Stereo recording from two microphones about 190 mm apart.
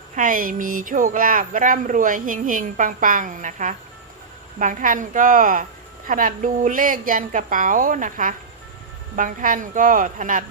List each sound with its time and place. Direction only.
0.2 s speech: 45° right (ahead or behind)